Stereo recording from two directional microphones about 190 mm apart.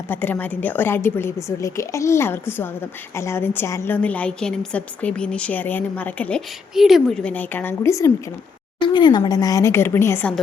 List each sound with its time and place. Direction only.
0.1 s a woman's voice: 10° left (ahead or behind)